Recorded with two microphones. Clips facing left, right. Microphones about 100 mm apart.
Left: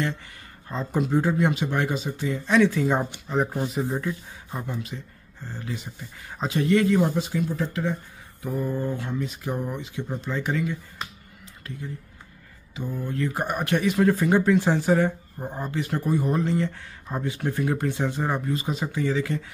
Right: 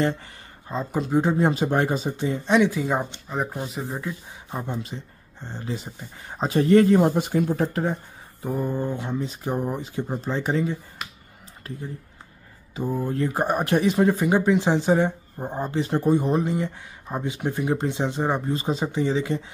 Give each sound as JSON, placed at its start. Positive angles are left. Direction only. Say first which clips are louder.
{"t": 0.7, "sound": "speech", "louder": "right 1 dB", "side_deg": -15}
{"t": 1.4, "sound": "speech", "louder": "right 3 dB", "side_deg": -35}
{"t": 2.0, "sound": "speech", "louder": "right 3 dB", "side_deg": -25}
{"t": 2.7, "sound": "speech", "louder": "left 1 dB", "side_deg": -5}
{"t": 4.1, "sound": "speech", "louder": "even", "side_deg": -20}
{"t": 12.7, "sound": "speech", "louder": "right 4 dB", "side_deg": -40}
{"t": 14.0, "sound": "speech", "louder": "even", "side_deg": -15}